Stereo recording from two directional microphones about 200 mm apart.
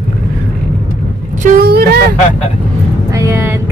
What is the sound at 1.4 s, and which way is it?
Vehicle, 45° right (ahead or behind).